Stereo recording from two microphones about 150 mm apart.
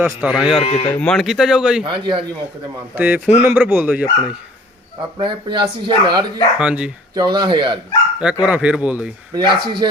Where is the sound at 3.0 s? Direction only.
10° right (ahead or behind).